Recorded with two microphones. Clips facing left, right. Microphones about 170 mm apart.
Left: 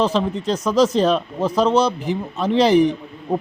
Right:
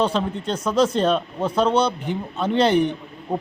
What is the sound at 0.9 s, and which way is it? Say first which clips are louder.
Speech: left 3 dB; 5° left (ahead or behind).